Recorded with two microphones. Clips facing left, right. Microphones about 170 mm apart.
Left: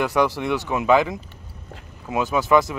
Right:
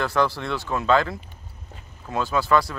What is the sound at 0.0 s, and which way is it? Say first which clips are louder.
Speech: left 3 dB; 15° left (ahead or behind).